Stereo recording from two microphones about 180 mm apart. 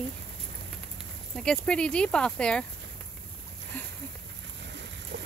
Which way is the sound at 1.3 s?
5° left (ahead or behind).